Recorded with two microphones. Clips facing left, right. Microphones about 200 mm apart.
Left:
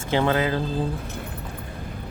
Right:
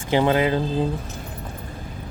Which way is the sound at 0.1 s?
15° right (ahead or behind).